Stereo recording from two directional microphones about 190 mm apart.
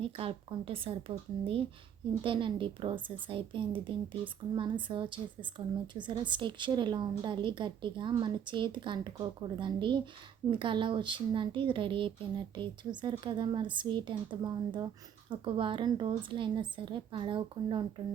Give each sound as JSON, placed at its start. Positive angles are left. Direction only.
{"t": 0.0, "sound": "a woman's voice", "side_deg": -30}